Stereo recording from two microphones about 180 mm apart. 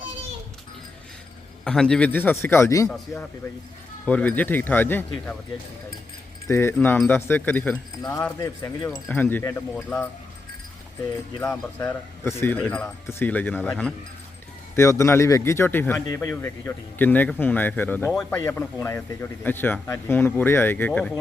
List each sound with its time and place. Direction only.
1.6 s speech: 5° left (ahead or behind)
4.0 s speech: 10° left (ahead or behind)
6.5 s speech: 15° left (ahead or behind)
11.5 s a man's voice: 10° left (ahead or behind)